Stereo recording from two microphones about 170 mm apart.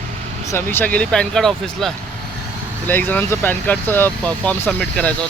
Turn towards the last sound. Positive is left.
turn(degrees=5)  # may be behind; listen again after turning